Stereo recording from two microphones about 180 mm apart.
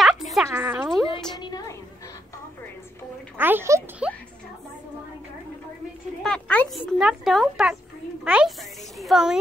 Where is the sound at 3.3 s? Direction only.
10° right (ahead or behind).